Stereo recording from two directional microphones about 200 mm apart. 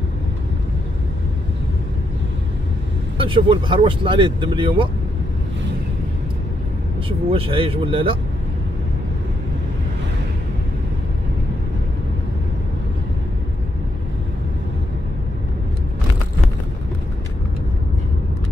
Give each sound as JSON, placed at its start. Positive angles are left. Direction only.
{"t": 3.2, "sound": "speech", "side_deg": -25}
{"t": 7.1, "sound": "speech", "side_deg": -30}